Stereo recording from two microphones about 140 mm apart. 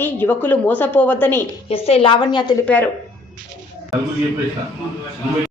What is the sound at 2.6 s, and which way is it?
Speech, 10° left (ahead or behind).